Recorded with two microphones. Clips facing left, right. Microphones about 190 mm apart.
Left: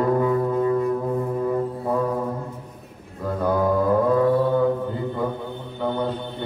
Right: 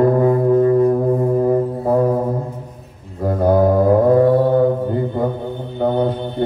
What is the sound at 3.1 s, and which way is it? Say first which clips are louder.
Mantra: right 7 dB; 45° right (ahead or behind).